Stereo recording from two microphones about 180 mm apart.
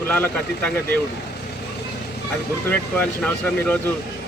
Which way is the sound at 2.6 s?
10° left (ahead or behind).